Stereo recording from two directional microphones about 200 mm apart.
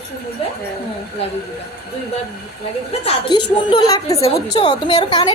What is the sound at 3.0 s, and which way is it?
A woman's voice, 25° left (ahead or behind).